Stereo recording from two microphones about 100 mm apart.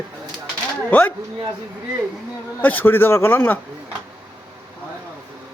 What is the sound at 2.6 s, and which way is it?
A man's voice, 15° left (ahead or behind).